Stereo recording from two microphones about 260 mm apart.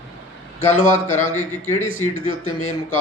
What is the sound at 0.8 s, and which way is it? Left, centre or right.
Speech, left.